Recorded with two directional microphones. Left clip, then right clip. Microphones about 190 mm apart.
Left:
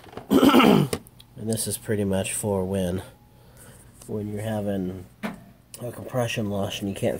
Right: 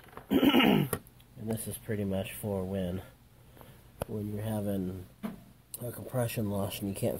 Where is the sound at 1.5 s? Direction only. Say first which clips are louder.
Left 9 dB; 20° left (ahead or behind).